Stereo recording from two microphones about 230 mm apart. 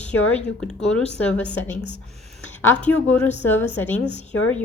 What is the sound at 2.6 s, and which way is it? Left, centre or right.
Speech, centre.